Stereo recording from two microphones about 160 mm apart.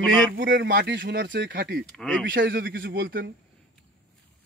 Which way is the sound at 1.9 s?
5° left (ahead or behind).